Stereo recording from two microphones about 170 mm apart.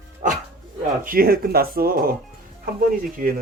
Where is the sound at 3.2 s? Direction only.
55° right (ahead or behind).